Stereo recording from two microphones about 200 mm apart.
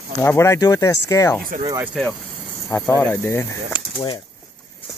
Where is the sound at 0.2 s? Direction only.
15° left (ahead or behind).